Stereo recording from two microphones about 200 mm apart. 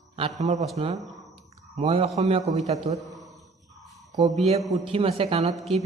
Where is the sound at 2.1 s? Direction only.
30° right (ahead or behind).